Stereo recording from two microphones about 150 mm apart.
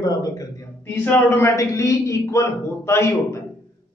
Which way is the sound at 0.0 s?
25° left (ahead or behind).